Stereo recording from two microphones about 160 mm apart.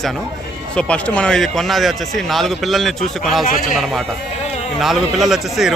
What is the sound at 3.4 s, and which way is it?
Speech, 60° left (ahead or behind).